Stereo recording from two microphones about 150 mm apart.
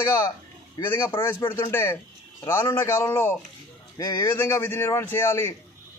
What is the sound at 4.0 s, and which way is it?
Speech, 25° left (ahead or behind).